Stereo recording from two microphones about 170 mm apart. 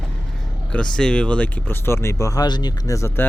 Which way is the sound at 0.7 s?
5° left (ahead or behind).